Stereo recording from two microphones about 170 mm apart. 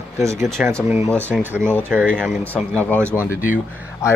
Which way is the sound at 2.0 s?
5° left (ahead or behind).